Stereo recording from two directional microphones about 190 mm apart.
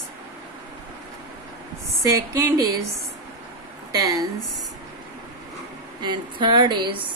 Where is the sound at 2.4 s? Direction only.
15° right (ahead or behind).